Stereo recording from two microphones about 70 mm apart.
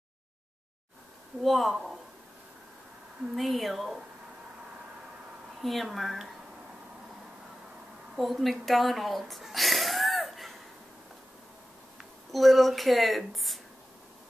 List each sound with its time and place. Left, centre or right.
1.4 s speech: centre
3.3 s speech: centre
5.6 s speech: centre
8.2 s speech: centre
12.0 s speech: centre